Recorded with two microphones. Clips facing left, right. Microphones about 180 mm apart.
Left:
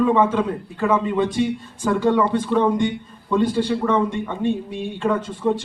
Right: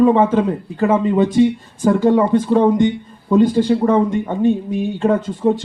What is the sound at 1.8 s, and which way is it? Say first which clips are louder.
A man's voice: right 5 dB; 35° right (ahead or behind).